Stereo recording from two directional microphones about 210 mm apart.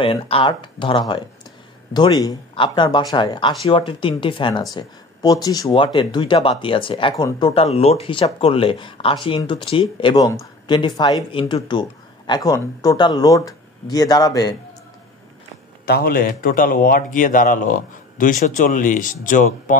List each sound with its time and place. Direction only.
0.0 s speech: 25° left (ahead or behind)
15.8 s a man's voice: 45° left (ahead or behind)